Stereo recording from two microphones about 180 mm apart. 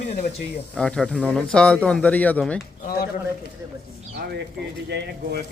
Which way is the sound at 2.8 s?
55° left (ahead or behind).